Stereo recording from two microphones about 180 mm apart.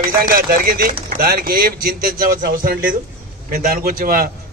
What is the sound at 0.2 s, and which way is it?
A man's voice, 55° right (ahead or behind).